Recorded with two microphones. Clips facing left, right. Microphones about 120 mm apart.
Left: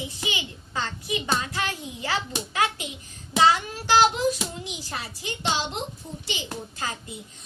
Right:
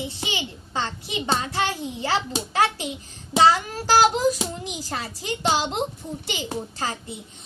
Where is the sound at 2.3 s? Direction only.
30° right (ahead or behind).